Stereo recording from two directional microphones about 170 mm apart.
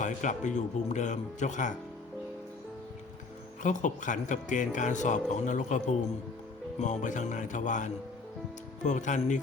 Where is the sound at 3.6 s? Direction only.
50° left (ahead or behind).